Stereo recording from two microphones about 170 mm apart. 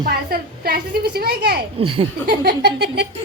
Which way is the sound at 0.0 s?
65° right (ahead or behind).